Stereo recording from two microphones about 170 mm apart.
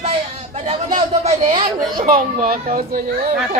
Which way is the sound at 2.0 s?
60° right (ahead or behind).